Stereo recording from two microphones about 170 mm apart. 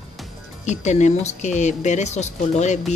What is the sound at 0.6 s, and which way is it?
Speech, 40° left (ahead or behind).